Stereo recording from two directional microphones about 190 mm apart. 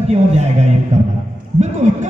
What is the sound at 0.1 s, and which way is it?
Speech, 35° right (ahead or behind).